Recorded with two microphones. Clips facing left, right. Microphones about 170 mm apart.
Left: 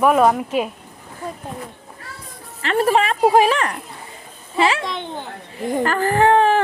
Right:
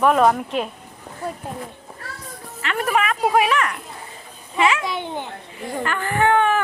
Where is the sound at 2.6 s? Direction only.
35° left (ahead or behind).